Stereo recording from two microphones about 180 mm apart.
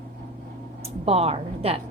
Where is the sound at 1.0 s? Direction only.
35° right (ahead or behind).